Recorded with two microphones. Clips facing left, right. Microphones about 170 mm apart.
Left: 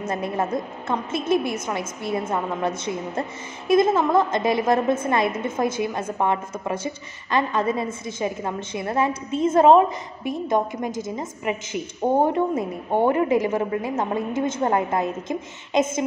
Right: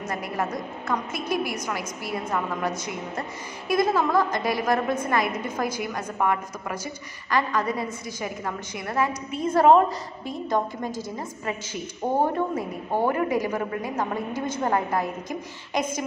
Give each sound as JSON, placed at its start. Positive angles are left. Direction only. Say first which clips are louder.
{"t": 0.0, "sound": "a woman's voice", "louder": "left 4 dB", "side_deg": 25}